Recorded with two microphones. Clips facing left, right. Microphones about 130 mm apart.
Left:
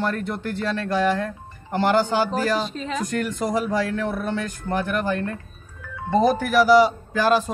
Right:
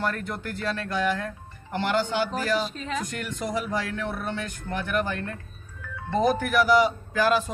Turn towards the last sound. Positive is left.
turn(degrees=35)  # may be behind; listen again after turning